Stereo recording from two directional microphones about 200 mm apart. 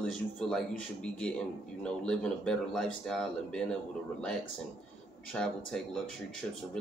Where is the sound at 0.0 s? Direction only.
5° left (ahead or behind).